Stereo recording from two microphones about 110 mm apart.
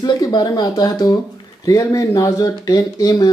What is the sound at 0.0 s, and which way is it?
Speech, 40° left (ahead or behind).